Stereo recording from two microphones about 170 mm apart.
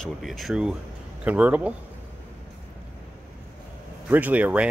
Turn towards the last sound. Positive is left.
turn(degrees=-10)  # may be behind; listen again after turning